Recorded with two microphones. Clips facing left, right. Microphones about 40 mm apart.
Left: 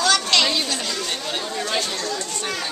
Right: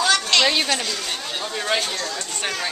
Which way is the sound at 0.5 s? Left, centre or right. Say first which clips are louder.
Right 3 dB; right.